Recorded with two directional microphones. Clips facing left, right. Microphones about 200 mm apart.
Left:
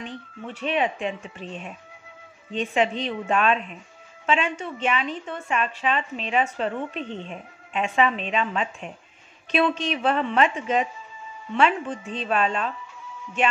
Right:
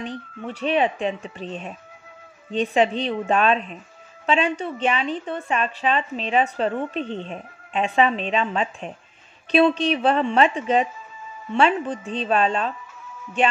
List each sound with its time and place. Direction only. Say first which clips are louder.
0.0 s a woman's voice: right 4 dB; 35° right (ahead or behind)